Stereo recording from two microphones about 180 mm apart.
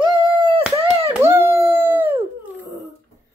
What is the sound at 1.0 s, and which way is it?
Howl, 15° right (ahead or behind).